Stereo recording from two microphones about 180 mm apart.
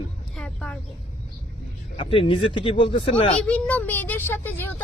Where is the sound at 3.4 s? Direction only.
10° left (ahead or behind).